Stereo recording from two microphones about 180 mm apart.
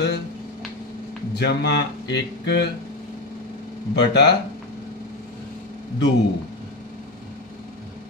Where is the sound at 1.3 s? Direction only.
70° left (ahead or behind).